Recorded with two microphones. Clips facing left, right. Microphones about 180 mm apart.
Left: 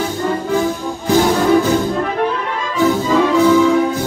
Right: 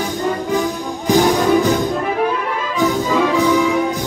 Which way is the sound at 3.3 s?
15° right (ahead or behind).